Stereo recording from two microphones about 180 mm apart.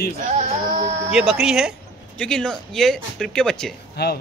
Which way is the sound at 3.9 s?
60° left (ahead or behind).